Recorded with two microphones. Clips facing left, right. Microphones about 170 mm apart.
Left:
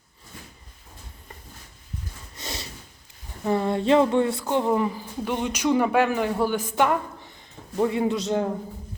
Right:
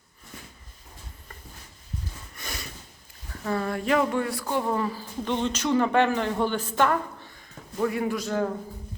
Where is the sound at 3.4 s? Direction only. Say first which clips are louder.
Left 5 dB; 20° left (ahead or behind).